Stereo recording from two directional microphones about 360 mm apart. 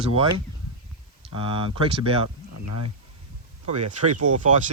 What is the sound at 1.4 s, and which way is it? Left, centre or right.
Speech, centre.